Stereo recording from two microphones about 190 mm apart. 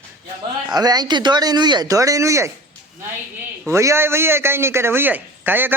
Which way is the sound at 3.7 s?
15° right (ahead or behind).